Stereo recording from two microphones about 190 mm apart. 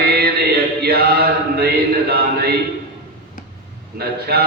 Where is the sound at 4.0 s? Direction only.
55° right (ahead or behind).